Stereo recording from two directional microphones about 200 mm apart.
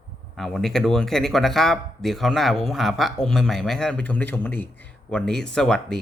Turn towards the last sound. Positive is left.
turn(degrees=5)  # may be behind; listen again after turning